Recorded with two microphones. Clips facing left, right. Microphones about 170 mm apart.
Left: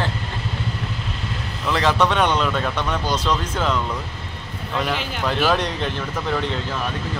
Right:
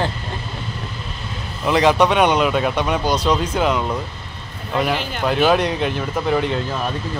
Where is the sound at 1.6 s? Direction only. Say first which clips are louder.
Right 4 dB; 15° right (ahead or behind).